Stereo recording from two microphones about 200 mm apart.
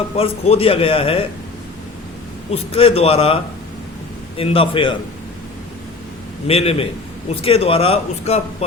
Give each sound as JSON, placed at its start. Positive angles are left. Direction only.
{"t": 0.2, "sound": "a man's voice", "side_deg": 30}
{"t": 2.5, "sound": "a man's voice", "side_deg": 30}
{"t": 6.5, "sound": "a man's voice", "side_deg": 30}